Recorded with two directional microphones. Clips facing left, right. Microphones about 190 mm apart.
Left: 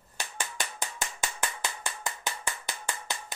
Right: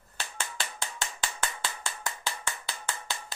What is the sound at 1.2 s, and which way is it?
Mechanisms, 15° left (ahead or behind).